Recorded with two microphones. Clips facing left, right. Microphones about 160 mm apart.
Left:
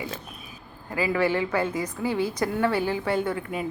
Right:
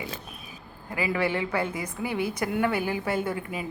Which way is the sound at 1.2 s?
20° right (ahead or behind).